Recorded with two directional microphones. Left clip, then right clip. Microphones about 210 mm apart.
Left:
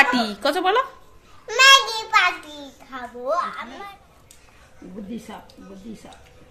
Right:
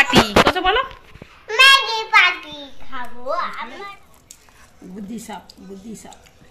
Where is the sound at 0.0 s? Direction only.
10° left (ahead or behind).